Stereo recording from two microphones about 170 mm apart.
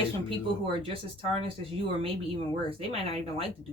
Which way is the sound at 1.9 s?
35° right (ahead or behind).